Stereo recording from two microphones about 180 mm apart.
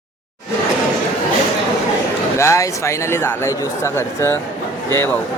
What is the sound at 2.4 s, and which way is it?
Speech, 15° left (ahead or behind).